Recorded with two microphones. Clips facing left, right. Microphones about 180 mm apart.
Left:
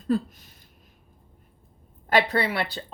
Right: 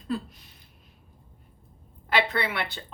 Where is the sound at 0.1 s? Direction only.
45° left (ahead or behind).